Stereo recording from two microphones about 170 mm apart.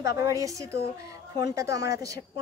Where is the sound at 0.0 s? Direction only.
20° right (ahead or behind).